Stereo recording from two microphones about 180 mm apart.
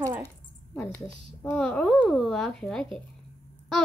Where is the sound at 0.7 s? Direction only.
10° left (ahead or behind).